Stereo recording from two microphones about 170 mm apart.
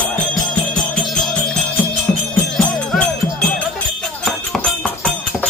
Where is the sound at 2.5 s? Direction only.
5° left (ahead or behind).